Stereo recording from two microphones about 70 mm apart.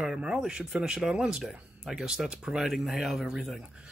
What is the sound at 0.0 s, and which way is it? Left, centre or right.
Speech, centre.